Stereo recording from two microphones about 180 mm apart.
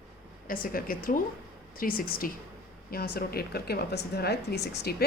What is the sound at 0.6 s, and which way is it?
A woman's voice, 55° left (ahead or behind).